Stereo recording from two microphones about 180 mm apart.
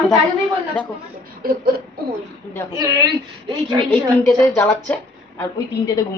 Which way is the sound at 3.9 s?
10° left (ahead or behind).